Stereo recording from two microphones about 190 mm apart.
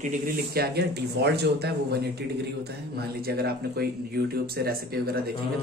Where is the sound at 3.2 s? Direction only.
55° right (ahead or behind).